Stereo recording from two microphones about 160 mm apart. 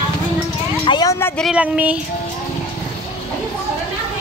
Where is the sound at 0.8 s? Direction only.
25° left (ahead or behind).